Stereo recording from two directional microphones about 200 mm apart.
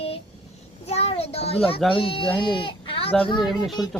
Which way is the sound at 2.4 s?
25° left (ahead or behind).